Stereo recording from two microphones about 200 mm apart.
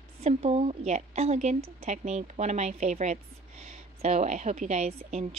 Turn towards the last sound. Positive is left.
turn(degrees=-30)  # may be behind; listen again after turning